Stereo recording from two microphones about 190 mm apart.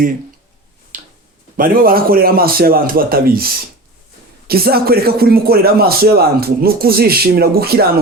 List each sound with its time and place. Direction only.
0.9 s tick-tock: 45° right (ahead or behind)
1.5 s a man's voice: 50° right (ahead or behind)